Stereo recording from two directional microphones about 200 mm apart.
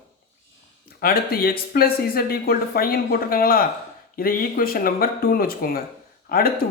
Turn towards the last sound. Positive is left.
turn(degrees=50)  # may be behind; listen again after turning